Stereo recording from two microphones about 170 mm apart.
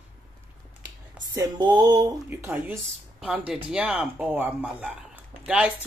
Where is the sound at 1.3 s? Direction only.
25° right (ahead or behind).